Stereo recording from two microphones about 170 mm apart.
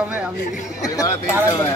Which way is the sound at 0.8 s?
20° left (ahead or behind).